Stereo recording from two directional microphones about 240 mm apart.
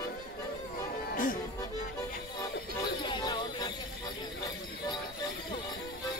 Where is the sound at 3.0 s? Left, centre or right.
Centre.